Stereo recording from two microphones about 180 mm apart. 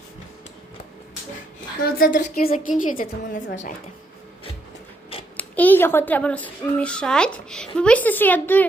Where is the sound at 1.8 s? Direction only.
55° left (ahead or behind).